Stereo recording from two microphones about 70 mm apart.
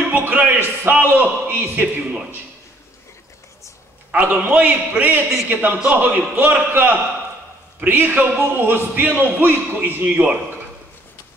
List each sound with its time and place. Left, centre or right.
0.1 s speech: right
2.0 s a man's voice: centre
4.1 s speech: right